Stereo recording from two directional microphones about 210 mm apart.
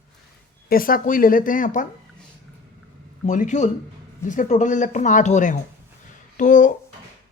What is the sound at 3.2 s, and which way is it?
Speech, 35° left (ahead or behind).